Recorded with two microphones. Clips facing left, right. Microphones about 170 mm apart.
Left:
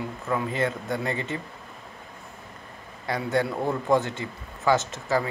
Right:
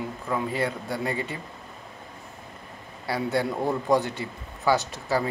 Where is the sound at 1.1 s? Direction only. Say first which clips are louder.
Even; 25° left (ahead or behind).